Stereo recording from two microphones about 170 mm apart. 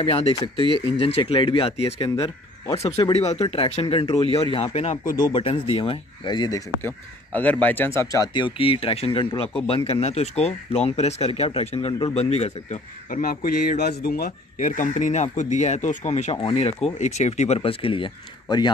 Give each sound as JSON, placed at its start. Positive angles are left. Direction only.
{"t": 0.0, "sound": "speech", "side_deg": 35}
{"t": 5.0, "sound": "speech", "side_deg": 25}
{"t": 6.8, "sound": "speech", "side_deg": 10}